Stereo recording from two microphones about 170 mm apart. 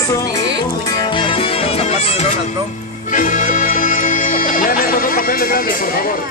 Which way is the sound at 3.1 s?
50° left (ahead or behind).